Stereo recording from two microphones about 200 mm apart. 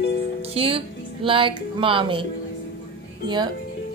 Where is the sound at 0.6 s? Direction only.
25° right (ahead or behind).